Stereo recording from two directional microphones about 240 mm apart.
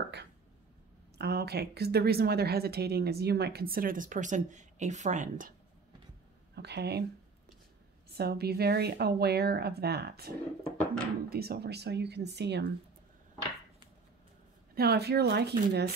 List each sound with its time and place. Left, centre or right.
1.1 s a woman's voice: right
6.5 s speech: right
8.1 s a woman's voice: right
14.8 s speech: right